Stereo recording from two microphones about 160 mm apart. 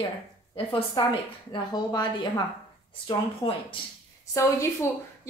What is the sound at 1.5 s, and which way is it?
Speech, 25° left (ahead or behind).